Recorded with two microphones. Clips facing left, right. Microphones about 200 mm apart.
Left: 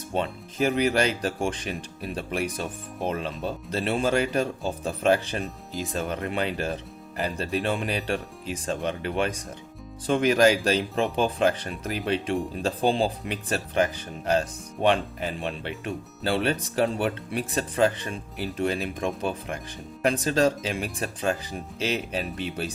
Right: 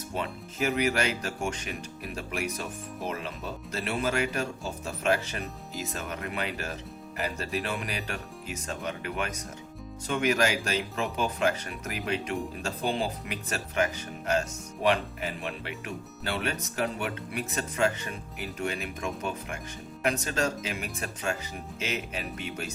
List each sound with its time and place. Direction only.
0.1 s speech: 30° left (ahead or behind)